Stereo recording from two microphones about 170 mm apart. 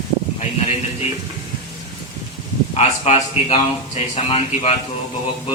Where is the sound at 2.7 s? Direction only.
40° left (ahead or behind).